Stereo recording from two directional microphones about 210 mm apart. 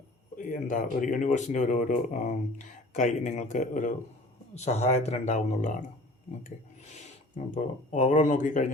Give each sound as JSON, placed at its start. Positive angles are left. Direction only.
{"t": 0.3, "sound": "speech", "side_deg": 35}
{"t": 6.4, "sound": "rub", "side_deg": 35}
{"t": 7.5, "sound": "speech", "side_deg": 35}